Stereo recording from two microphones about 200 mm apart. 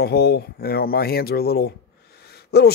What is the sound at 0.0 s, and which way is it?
Speech, 55° left (ahead or behind).